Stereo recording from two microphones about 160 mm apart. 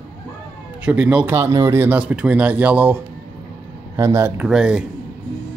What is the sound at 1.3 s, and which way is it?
Speech, 20° right (ahead or behind).